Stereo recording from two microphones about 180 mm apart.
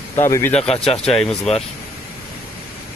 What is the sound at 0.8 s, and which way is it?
Speech, 30° left (ahead or behind).